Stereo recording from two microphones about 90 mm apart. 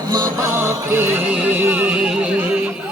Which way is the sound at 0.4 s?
30° right (ahead or behind).